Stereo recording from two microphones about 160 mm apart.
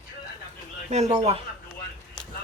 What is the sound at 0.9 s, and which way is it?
Speech, 45° right (ahead or behind).